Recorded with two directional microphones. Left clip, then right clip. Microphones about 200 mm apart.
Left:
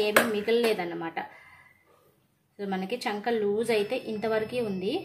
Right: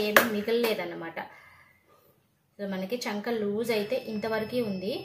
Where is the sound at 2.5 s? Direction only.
45° left (ahead or behind).